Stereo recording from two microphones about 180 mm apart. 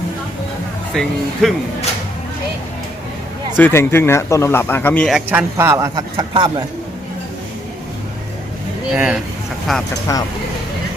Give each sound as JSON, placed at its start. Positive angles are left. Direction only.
{"t": 0.9, "sound": "speech", "side_deg": 0}
{"t": 3.6, "sound": "speech", "side_deg": 15}
{"t": 5.1, "sound": "speech", "side_deg": -10}
{"t": 9.0, "sound": "speech", "side_deg": -5}
{"t": 10.1, "sound": "speech", "side_deg": 15}